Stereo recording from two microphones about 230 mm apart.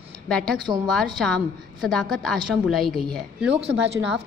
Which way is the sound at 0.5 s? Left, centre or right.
Centre.